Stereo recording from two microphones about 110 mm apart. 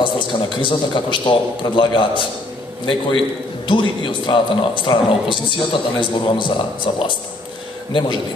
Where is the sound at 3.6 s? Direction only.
45° left (ahead or behind).